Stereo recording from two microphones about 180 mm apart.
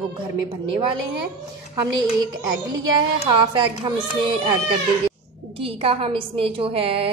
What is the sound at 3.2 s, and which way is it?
Speech, 25° right (ahead or behind).